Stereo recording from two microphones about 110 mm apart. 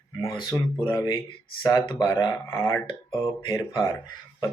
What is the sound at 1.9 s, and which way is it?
Speech, 45° left (ahead or behind).